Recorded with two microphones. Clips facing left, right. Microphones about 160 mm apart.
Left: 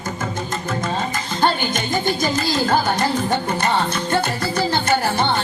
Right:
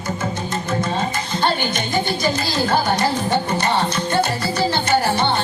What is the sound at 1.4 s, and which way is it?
Music, 45° left (ahead or behind).